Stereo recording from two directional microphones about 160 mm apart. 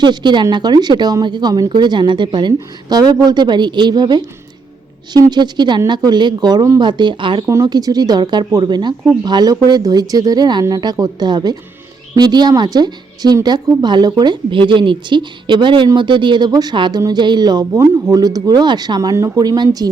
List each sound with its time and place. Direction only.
0.0 s a woman's voice: 30° right (ahead or behind)